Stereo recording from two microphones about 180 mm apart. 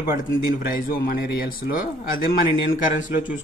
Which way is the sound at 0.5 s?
55° left (ahead or behind).